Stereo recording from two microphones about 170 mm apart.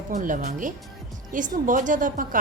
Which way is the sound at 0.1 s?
50° right (ahead or behind).